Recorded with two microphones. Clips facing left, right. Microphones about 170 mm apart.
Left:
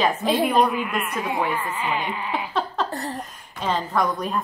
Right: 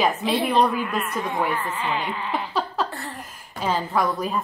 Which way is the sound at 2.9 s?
40° left (ahead or behind).